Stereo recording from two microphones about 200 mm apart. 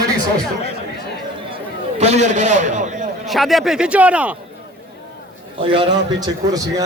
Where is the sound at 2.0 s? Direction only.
35° right (ahead or behind).